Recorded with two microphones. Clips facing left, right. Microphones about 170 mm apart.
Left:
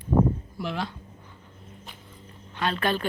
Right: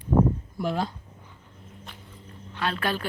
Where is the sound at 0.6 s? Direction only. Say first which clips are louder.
Right 4 dB; 40° right (ahead or behind).